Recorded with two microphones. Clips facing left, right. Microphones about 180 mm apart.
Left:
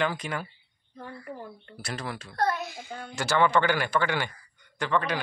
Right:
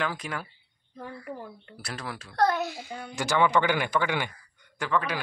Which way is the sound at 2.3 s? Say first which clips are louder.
Right 3 dB; 90° right.